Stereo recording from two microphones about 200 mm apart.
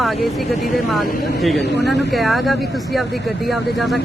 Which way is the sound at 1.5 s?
55° left (ahead or behind).